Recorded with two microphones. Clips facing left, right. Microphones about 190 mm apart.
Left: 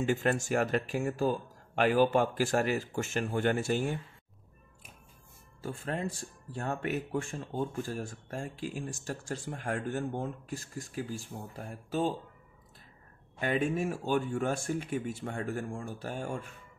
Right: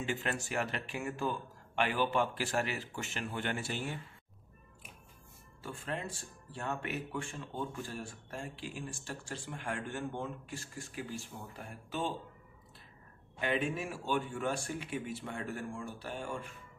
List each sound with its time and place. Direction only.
0.0 s a man's voice: 45° left (ahead or behind)
5.6 s speech: 40° left (ahead or behind)
13.4 s a man's voice: 45° left (ahead or behind)